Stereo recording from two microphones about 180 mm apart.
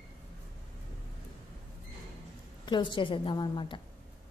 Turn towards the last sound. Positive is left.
turn(degrees=25)  # may be behind; listen again after turning